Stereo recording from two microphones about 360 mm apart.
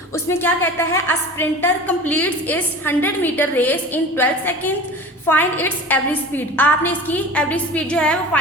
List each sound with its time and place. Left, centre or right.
0.3 s a woman's voice: centre